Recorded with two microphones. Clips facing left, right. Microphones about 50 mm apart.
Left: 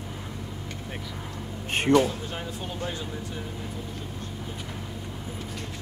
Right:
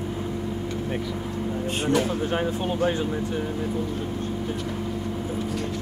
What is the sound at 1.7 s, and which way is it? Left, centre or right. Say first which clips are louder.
Speech: left 3 dB; left.